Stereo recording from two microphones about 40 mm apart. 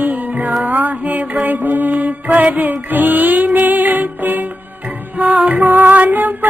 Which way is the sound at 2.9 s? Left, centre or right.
Right.